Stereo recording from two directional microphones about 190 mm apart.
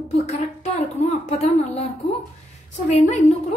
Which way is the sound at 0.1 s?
35° left (ahead or behind).